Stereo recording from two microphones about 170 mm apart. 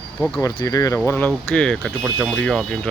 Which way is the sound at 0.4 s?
20° left (ahead or behind).